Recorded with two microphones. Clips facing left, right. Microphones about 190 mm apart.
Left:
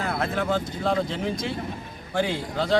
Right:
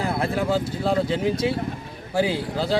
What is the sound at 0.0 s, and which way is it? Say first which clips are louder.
Speech: right 3 dB; 10° right (ahead or behind).